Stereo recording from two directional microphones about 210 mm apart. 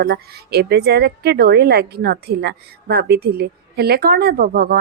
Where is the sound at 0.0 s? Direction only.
45° right (ahead or behind).